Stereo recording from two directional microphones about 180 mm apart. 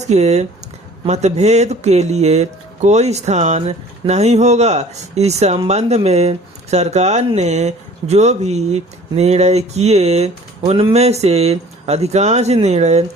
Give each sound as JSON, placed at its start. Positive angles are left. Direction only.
{"t": 0.1, "sound": "speech", "side_deg": -40}